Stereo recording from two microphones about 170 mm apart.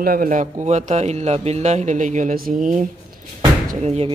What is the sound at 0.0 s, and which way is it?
A man's voice, 55° right (ahead or behind).